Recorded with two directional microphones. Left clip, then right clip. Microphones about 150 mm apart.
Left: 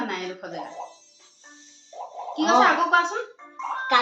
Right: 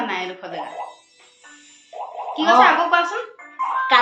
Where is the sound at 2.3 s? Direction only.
Centre (ahead or behind).